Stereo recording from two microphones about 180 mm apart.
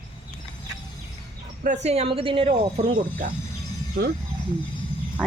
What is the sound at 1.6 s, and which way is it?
Speech, 40° right (ahead or behind).